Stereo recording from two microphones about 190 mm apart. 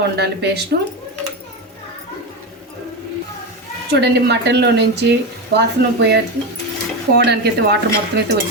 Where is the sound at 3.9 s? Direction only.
60° right (ahead or behind).